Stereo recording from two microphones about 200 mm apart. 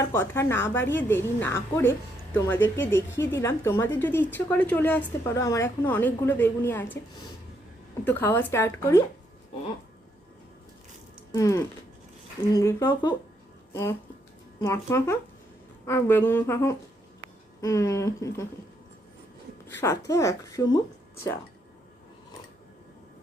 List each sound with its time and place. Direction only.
0.0 s a woman's voice: 10° left (ahead or behind)
8.0 s a woman's voice: 10° left (ahead or behind)
11.3 s a woman's voice: 15° left (ahead or behind)
14.6 s a woman's voice: 15° left (ahead or behind)
19.6 s a woman's voice: 15° left (ahead or behind)